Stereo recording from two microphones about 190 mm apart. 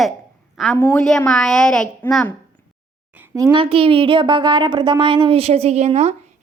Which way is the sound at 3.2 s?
20° right (ahead or behind).